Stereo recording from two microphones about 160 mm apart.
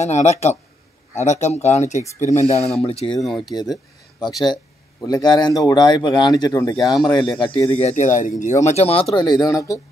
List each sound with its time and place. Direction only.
0.0 s speech: 45° left (ahead or behind)
3.2 s speech: centre (ahead or behind)
3.4 s speech: 25° left (ahead or behind)
5.0 s speech: 25° left (ahead or behind)
7.9 s speech: 50° left (ahead or behind)
9.1 s speech: 25° left (ahead or behind)